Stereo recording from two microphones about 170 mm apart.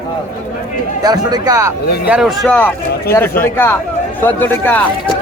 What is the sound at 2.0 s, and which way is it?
Speech, 5° right (ahead or behind).